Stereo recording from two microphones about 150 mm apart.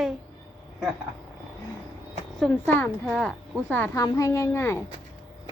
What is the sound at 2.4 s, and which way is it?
A woman's voice, 15° left (ahead or behind).